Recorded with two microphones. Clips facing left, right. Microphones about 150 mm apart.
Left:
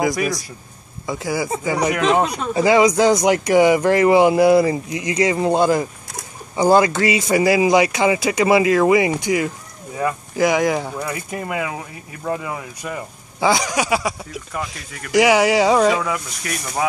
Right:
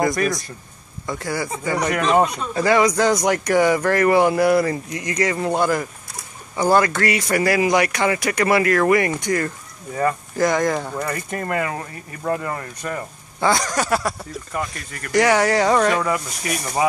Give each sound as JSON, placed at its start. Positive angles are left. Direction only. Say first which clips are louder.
{"t": 0.0, "sound": "speech", "louder": "even", "side_deg": 5}